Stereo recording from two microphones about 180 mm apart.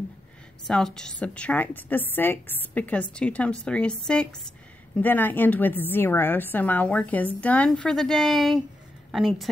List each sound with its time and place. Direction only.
0.7 s a woman's voice: 5° left (ahead or behind)